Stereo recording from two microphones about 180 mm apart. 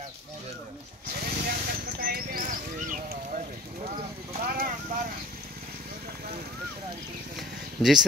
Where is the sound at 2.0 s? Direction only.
55° right (ahead or behind).